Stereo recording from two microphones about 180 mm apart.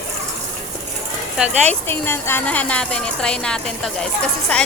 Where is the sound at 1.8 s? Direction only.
10° left (ahead or behind).